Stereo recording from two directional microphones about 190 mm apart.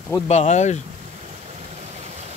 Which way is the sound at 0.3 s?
35° left (ahead or behind).